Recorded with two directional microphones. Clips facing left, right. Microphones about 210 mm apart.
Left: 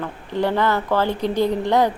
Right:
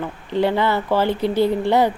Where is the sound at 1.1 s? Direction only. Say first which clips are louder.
Right 2 dB; 15° left (ahead or behind).